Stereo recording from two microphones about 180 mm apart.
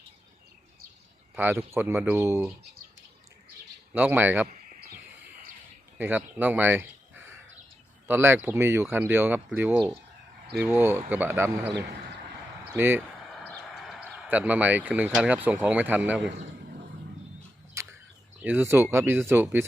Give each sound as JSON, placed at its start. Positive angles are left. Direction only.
{"t": 1.4, "sound": "speech", "side_deg": -15}
{"t": 3.9, "sound": "speech", "side_deg": -10}
{"t": 4.4, "sound": "a sound", "side_deg": -50}
{"t": 6.0, "sound": "speech", "side_deg": -10}
{"t": 12.7, "sound": "speech", "side_deg": -10}
{"t": 13.5, "sound": "a sound", "side_deg": 0}
{"t": 14.3, "sound": "speech", "side_deg": -10}
{"t": 17.8, "sound": "a sound", "side_deg": -15}
{"t": 18.4, "sound": "speech", "side_deg": -10}